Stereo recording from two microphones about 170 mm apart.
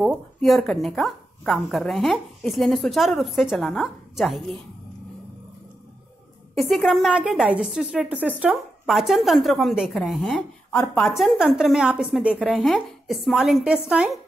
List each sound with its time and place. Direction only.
0.0 s speech: centre (ahead or behind)
6.5 s speech: centre (ahead or behind)